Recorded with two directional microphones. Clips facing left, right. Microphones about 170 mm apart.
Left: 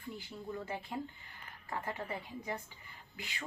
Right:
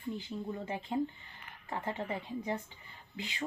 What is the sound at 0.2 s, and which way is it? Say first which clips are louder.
A woman's voice: right 4 dB; 20° right (ahead or behind).